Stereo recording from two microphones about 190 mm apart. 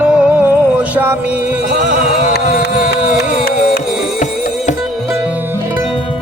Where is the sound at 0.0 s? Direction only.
5° right (ahead or behind).